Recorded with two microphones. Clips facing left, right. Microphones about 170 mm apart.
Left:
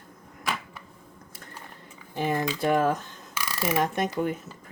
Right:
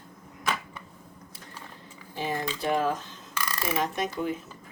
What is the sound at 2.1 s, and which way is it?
Speech, 50° left (ahead or behind).